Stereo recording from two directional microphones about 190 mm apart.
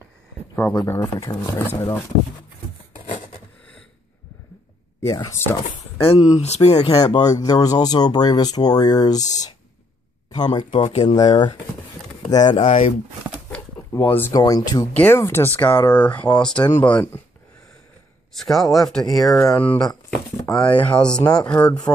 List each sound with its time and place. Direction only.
0.7 s speech: 15° left (ahead or behind)
3.1 s a sound: 40° left (ahead or behind)
5.0 s speech: 20° left (ahead or behind)
5.9 s speech: 30° left (ahead or behind)
6.8 s speech: 20° left (ahead or behind)
12.6 s speech: 40° left (ahead or behind)
13.9 s speech: 10° left (ahead or behind)
18.3 s speech: centre (ahead or behind)
19.2 s speech: 15° left (ahead or behind)
21.2 s speech: 20° left (ahead or behind)
21.5 s speech: 5° left (ahead or behind)